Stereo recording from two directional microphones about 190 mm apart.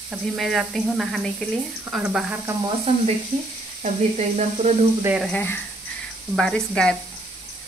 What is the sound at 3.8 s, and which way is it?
Sizzle, 35° right (ahead or behind).